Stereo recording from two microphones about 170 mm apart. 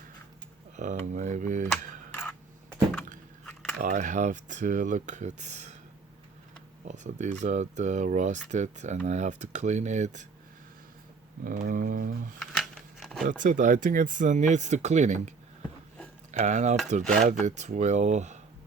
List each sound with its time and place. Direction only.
0.8 s speech: 45° right (ahead or behind)
2.1 s a sound: 10° left (ahead or behind)
3.8 s speech: 50° right (ahead or behind)
6.8 s speech: 45° right (ahead or behind)
11.4 s speech: 55° right (ahead or behind)
12.4 s a sound: centre (ahead or behind)
13.2 s speech: 50° right (ahead or behind)
16.4 s speech: 45° right (ahead or behind)
17.0 s filing: 5° left (ahead or behind)
17.4 s speech: 45° right (ahead or behind)